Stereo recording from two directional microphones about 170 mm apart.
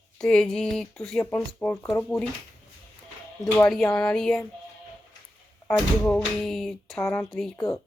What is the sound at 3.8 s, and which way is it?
Speech, 5° left (ahead or behind).